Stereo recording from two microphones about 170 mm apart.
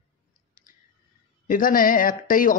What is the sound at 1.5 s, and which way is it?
Speech, 55° left (ahead or behind).